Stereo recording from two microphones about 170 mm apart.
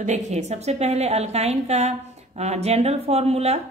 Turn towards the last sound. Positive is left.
turn(degrees=-40)  # may be behind; listen again after turning